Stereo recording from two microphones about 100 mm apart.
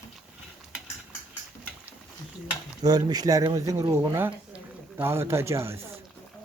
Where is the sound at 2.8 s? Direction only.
40° right (ahead or behind).